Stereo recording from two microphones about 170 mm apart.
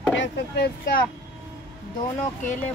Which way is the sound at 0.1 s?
80° left.